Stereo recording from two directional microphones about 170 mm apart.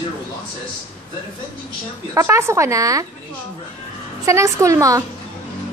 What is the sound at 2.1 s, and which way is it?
Speech, 15° right (ahead or behind).